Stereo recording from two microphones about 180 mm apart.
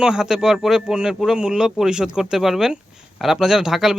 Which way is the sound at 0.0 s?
5° right (ahead or behind).